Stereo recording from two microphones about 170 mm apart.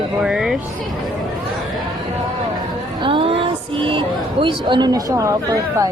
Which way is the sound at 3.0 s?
30° right (ahead or behind).